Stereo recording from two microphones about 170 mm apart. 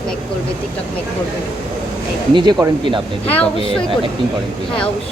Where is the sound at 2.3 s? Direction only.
30° right (ahead or behind).